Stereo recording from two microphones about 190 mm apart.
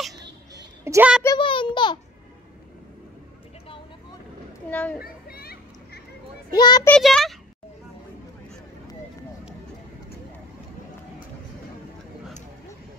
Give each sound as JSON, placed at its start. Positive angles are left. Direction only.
{"t": 0.8, "sound": "a woman's voice", "side_deg": -15}
{"t": 1.2, "sound": "a child's voice", "side_deg": 25}
{"t": 4.6, "sound": "speech", "side_deg": 10}
{"t": 4.9, "sound": "children playing", "side_deg": 50}
{"t": 6.5, "sound": "a child's voice", "side_deg": 20}
{"t": 6.9, "sound": "a child's voice", "side_deg": 0}